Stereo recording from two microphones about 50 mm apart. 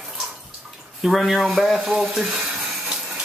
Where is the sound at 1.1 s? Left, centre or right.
Centre.